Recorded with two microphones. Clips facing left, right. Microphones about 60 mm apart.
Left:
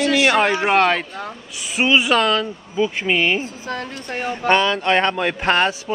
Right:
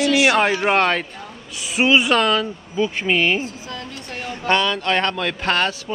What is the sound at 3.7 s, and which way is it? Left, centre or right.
Speech, left.